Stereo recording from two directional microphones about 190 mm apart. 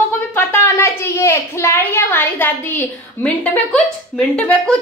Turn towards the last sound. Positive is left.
turn(degrees=5)  # may be behind; listen again after turning